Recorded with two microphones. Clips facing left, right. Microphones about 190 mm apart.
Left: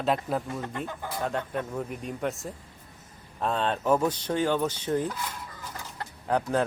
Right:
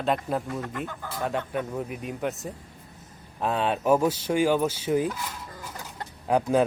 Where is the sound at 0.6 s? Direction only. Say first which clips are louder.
Right 1 dB; 30° left (ahead or behind).